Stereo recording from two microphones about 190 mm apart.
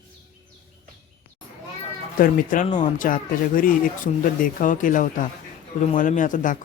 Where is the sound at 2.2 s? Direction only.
45° left (ahead or behind).